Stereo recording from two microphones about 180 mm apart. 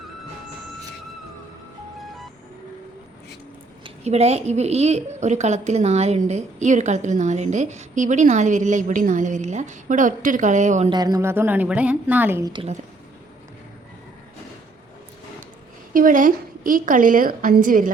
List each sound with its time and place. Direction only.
3.8 s a woman's voice: 35° right (ahead or behind)
10.8 s a woman's voice: 20° right (ahead or behind)
15.9 s a woman's voice: 50° right (ahead or behind)